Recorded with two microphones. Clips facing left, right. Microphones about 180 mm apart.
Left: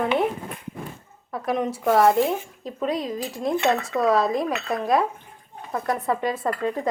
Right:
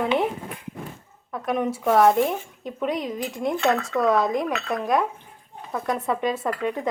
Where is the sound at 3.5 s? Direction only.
20° left (ahead or behind).